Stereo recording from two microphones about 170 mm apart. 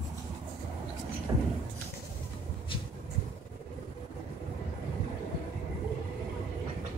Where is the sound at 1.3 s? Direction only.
20° right (ahead or behind).